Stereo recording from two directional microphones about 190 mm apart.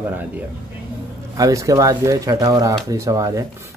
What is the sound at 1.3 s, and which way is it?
Speech, 15° right (ahead or behind).